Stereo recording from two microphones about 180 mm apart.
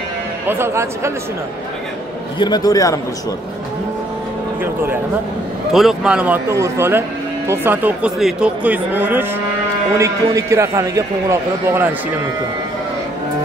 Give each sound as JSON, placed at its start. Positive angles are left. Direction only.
{"t": 0.5, "sound": "speech", "side_deg": -15}
{"t": 2.3, "sound": "a man's voice", "side_deg": 25}
{"t": 5.7, "sound": "speech", "side_deg": 0}